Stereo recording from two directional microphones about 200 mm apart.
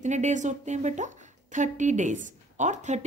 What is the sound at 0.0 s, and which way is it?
A woman's voice, 35° right (ahead or behind).